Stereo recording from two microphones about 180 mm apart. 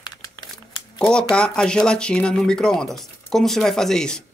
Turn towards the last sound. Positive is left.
turn(degrees=5)  # may be behind; listen again after turning